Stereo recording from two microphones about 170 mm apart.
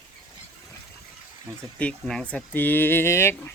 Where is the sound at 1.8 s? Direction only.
5° left (ahead or behind).